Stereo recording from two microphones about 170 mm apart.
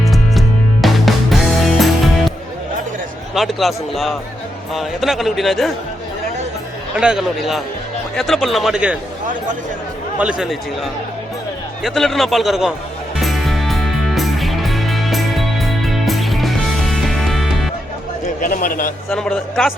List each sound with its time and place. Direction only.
0.0 s music: centre (ahead or behind)
3.3 s a man's voice: centre (ahead or behind)
6.9 s a man's voice: 5° right (ahead or behind)
10.2 s a man's voice: 5° right (ahead or behind)
11.8 s a man's voice: centre (ahead or behind)
13.1 s music: centre (ahead or behind)
18.3 s a man's voice: 50° left (ahead or behind)
19.1 s a man's voice: 5° left (ahead or behind)